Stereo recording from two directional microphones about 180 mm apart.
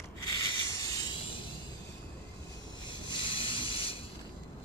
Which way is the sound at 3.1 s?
25° left (ahead or behind).